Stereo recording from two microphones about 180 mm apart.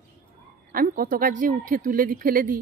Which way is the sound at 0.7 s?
50° right (ahead or behind).